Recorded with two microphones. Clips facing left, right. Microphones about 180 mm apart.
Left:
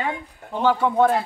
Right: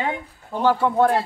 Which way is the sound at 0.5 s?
5° right (ahead or behind).